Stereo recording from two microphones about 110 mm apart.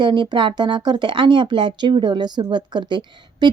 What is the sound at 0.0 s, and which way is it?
Speech, 45° right (ahead or behind).